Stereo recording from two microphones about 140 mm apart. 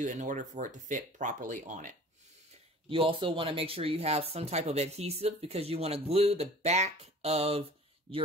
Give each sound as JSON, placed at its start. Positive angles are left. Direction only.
{"t": 0.0, "sound": "speech", "side_deg": -65}
{"t": 2.9, "sound": "speech", "side_deg": -40}